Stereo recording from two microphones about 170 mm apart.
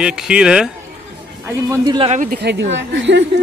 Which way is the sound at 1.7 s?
25° right (ahead or behind).